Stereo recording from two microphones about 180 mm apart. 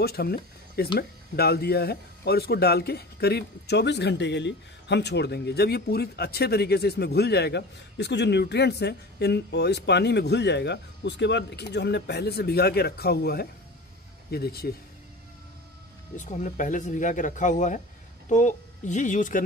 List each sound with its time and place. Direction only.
0.0 s speech: 60° left (ahead or behind)
16.2 s speech: 45° left (ahead or behind)